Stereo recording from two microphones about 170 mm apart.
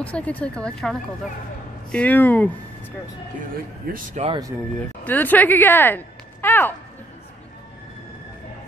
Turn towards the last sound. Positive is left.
turn(degrees=10)  # may be behind; listen again after turning